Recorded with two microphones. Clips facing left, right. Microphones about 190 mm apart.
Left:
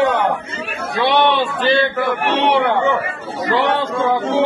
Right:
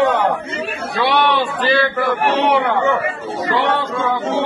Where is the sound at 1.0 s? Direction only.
25° left (ahead or behind).